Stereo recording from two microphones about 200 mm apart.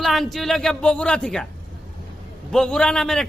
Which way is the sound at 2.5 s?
5° left (ahead or behind).